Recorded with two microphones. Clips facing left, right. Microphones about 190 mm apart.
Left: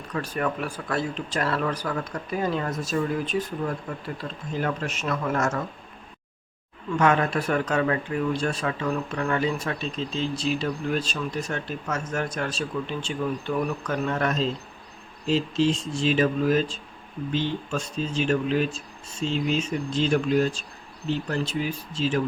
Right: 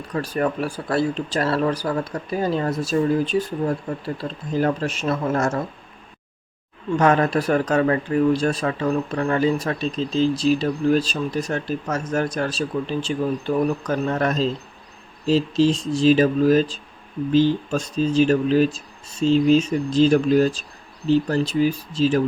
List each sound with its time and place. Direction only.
0.1 s speech: 35° right (ahead or behind)
7.0 s speech: 35° right (ahead or behind)